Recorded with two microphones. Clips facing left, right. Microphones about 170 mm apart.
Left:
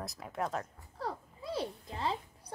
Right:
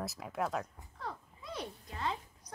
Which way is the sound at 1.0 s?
30° left (ahead or behind).